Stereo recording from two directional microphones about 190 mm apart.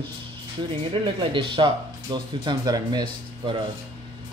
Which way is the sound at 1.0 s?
25° right (ahead or behind).